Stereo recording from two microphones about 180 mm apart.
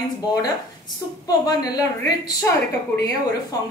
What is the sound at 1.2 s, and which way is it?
Speech, 20° left (ahead or behind).